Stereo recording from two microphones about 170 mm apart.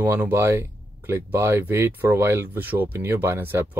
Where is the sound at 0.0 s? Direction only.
10° right (ahead or behind).